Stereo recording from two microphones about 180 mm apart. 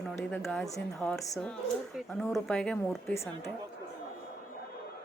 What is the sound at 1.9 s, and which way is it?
A woman's voice, centre (ahead or behind).